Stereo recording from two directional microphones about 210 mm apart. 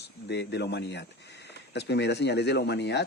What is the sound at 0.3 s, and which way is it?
Speech, 55° left (ahead or behind).